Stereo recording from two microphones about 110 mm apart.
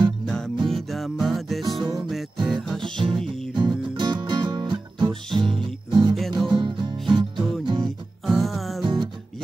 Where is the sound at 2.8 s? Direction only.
50° right (ahead or behind).